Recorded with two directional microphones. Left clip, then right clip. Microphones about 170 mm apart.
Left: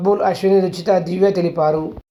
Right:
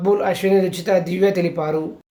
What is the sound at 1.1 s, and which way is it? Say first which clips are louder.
Speech: left 2 dB; 25° right (ahead or behind).